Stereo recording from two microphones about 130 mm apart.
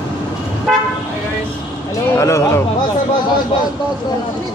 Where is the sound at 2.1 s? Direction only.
20° left (ahead or behind).